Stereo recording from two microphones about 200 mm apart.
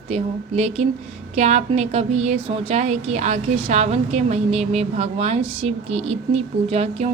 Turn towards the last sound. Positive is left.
turn(degrees=-30)  # may be behind; listen again after turning